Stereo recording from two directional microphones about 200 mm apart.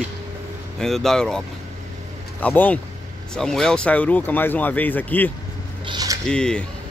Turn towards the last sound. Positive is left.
turn(degrees=5)  # may be behind; listen again after turning